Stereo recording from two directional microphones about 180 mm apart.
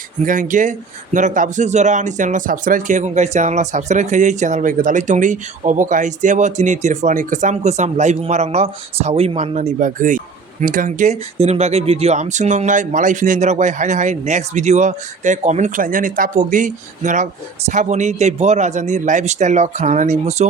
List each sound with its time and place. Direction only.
0.3 s speech: 45° right (ahead or behind)